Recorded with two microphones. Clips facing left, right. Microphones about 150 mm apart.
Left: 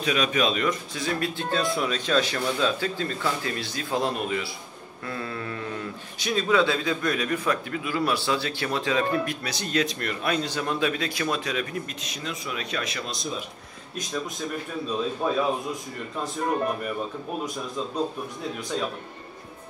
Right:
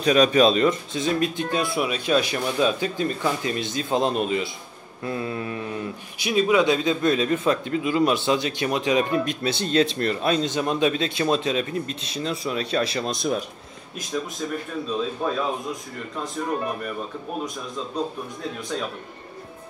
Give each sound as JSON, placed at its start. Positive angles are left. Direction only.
{"t": 0.0, "sound": "speech", "side_deg": -35}
{"t": 13.1, "sound": "speech", "side_deg": -60}
{"t": 15.2, "sound": "a man's voice", "side_deg": 5}
{"t": 16.4, "sound": "a man's voice", "side_deg": 5}